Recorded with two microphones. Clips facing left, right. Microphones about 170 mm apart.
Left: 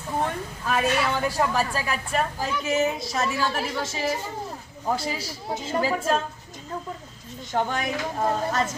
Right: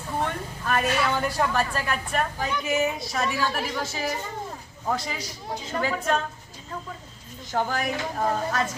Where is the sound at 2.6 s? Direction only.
30° left (ahead or behind).